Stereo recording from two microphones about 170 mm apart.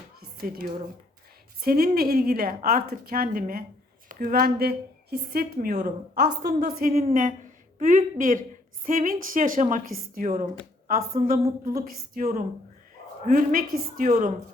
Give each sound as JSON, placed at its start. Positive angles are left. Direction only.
{"t": 0.2, "sound": "a sound", "side_deg": -60}
{"t": 1.6, "sound": "a woman's voice", "side_deg": -60}
{"t": 5.7, "sound": "a woman's voice", "side_deg": -50}
{"t": 6.2, "sound": "a woman's voice", "side_deg": -65}
{"t": 13.2, "sound": "a woman's voice", "side_deg": -55}